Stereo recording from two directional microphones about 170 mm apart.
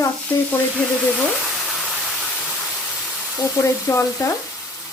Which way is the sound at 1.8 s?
Centre (ahead or behind).